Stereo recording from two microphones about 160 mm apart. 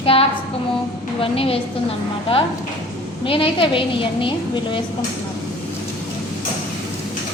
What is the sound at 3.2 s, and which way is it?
A woman's voice, 35° left (ahead or behind).